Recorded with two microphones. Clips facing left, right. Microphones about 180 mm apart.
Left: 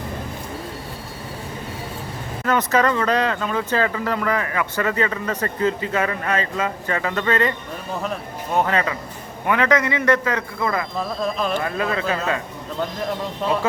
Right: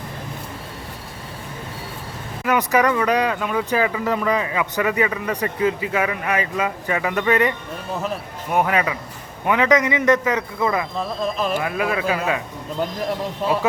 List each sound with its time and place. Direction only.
2.4 s speech: 15° right (ahead or behind)
10.9 s speech: centre (ahead or behind)